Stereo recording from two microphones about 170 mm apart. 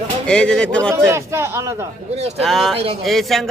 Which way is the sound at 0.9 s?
15° right (ahead or behind).